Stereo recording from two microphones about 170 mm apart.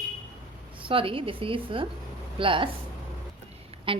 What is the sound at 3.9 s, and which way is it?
Speech, 30° right (ahead or behind).